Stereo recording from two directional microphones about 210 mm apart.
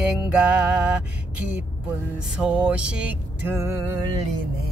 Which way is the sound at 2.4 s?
5° right (ahead or behind).